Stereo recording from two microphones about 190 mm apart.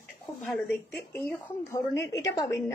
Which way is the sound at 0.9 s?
10° left (ahead or behind).